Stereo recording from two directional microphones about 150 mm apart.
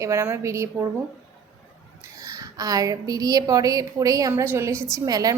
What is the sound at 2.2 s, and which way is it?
A woman's voice, 25° right (ahead or behind).